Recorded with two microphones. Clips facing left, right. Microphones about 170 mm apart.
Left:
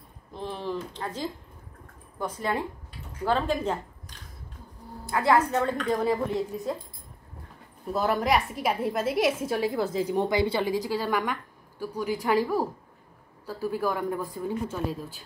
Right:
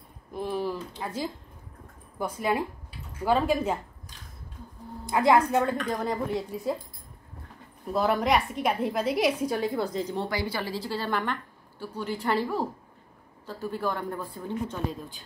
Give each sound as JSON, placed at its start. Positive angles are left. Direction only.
{"t": 0.3, "sound": "a sound", "side_deg": -10}
{"t": 2.1, "sound": "a woman's voice", "side_deg": -10}
{"t": 5.0, "sound": "a woman's voice", "side_deg": -15}
{"t": 5.6, "sound": "a woman's voice", "side_deg": 0}
{"t": 7.8, "sound": "a woman's voice", "side_deg": 0}